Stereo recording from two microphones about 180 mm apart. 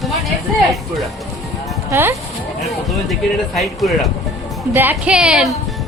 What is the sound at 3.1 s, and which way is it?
Speech, centre (ahead or behind).